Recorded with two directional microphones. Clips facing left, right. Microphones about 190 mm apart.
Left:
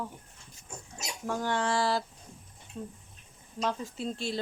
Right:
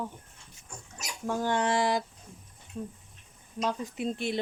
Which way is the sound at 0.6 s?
25° left (ahead or behind).